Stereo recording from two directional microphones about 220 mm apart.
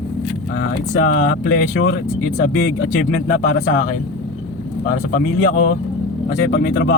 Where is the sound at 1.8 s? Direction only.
45° left (ahead or behind).